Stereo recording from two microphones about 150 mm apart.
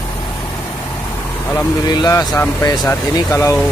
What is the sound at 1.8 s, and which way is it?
Speech, 25° left (ahead or behind).